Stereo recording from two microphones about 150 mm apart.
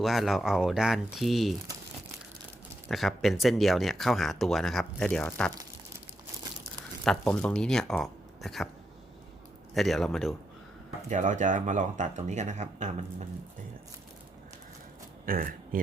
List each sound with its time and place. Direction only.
0.0 s speech: centre (ahead or behind)
2.9 s speech: centre (ahead or behind)
7.0 s speech: 5° left (ahead or behind)
9.7 s speech: centre (ahead or behind)
11.1 s speech: 55° right (ahead or behind)
15.3 s speech: 70° right (ahead or behind)